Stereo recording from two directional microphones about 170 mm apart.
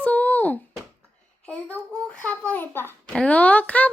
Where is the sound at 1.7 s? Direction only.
5° left (ahead or behind).